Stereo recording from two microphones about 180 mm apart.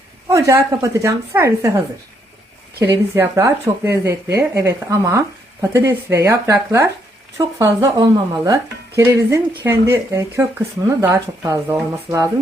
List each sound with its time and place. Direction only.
0.3 s speech: 15° right (ahead or behind)
2.8 s speech: 10° right (ahead or behind)